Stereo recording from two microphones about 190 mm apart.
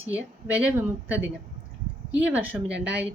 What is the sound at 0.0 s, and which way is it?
Speech, 10° right (ahead or behind).